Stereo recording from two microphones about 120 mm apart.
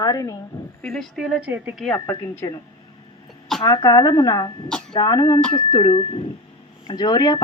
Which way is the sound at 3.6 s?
35° left (ahead or behind).